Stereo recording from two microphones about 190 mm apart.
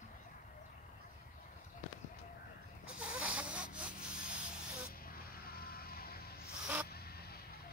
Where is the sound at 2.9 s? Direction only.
5° right (ahead or behind).